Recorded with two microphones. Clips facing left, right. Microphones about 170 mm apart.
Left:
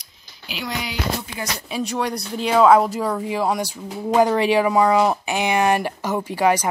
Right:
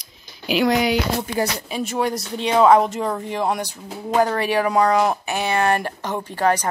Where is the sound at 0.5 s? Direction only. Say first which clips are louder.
Right 11 dB; 55° right (ahead or behind).